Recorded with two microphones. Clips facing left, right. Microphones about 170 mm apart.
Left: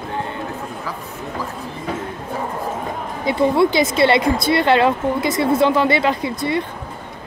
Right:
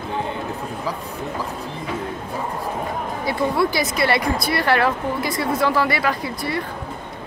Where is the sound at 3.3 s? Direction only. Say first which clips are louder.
Left 5 dB; 20° left (ahead or behind).